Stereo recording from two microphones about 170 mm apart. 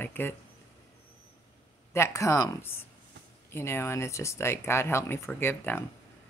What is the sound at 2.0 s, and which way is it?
Speech, 15° left (ahead or behind).